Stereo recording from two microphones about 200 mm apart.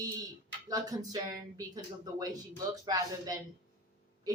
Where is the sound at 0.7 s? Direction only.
20° right (ahead or behind).